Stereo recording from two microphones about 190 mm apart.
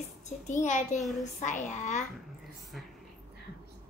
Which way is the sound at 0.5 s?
40° left (ahead or behind).